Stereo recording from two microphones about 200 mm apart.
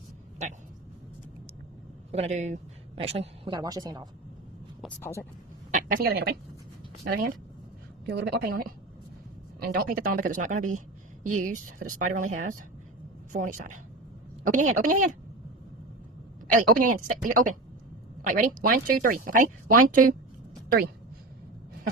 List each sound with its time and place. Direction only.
0.4 s speech: 35° right (ahead or behind)
2.1 s a woman's voice: 35° right (ahead or behind); by 4.0 s 20° right (ahead or behind)
5.7 s a woman's voice: 45° right (ahead or behind)
16.5 s speech: 40° right (ahead or behind)